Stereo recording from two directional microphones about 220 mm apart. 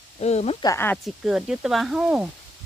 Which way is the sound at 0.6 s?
15° left (ahead or behind).